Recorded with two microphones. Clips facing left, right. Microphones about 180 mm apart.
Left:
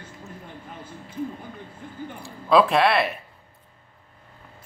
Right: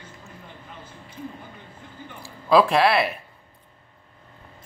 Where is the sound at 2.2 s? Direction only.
Centre (ahead or behind).